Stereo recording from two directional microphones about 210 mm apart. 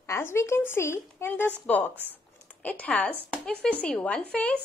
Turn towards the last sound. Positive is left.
turn(degrees=5)  # may be behind; listen again after turning